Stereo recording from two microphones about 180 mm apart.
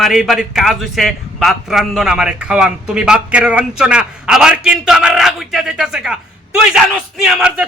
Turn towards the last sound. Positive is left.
turn(degrees=-5)  # may be behind; listen again after turning